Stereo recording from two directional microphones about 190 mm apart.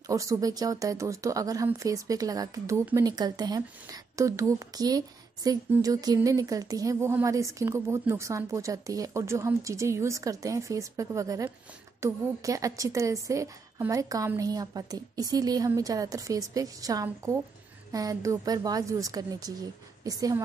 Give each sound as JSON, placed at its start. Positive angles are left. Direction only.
{"t": 0.0, "sound": "a woman's voice", "side_deg": -15}